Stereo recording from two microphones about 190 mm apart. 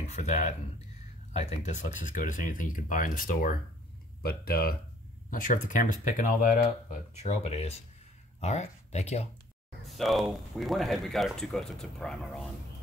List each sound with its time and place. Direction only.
0.1 s speech: 40° left (ahead or behind)
9.8 s speech: centre (ahead or behind)